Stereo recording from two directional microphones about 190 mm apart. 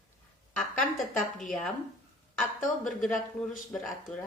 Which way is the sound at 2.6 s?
Centre (ahead or behind).